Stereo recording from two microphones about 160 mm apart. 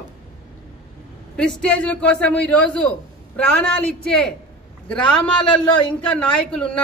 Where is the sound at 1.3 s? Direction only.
5° left (ahead or behind).